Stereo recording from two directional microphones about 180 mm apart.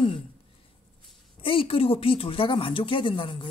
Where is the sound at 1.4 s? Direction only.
30° left (ahead or behind).